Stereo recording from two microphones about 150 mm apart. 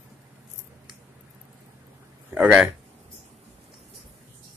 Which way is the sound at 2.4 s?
10° right (ahead or behind).